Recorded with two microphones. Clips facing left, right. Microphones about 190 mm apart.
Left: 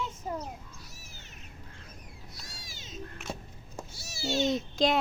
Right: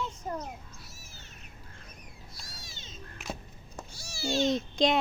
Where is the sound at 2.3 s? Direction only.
20° left (ahead or behind).